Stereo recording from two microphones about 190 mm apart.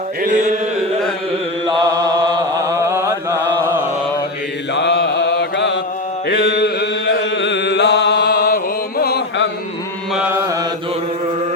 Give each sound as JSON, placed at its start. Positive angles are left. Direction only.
{"t": 0.2, "sound": "a sound", "side_deg": -40}
{"t": 1.6, "sound": "chant", "side_deg": -20}
{"t": 4.7, "sound": "mantra", "side_deg": 65}
{"t": 6.2, "sound": "chant", "side_deg": 60}
{"t": 10.2, "sound": "mantra", "side_deg": -10}